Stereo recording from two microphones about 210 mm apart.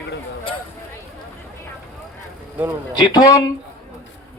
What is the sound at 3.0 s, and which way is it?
Speech, 20° left (ahead or behind).